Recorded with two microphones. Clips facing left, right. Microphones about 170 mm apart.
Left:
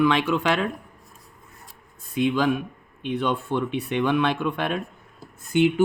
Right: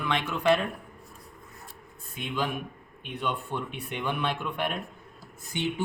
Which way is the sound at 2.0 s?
90° left.